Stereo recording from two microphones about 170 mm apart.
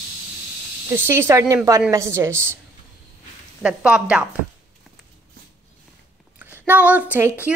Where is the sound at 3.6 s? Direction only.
5° right (ahead or behind).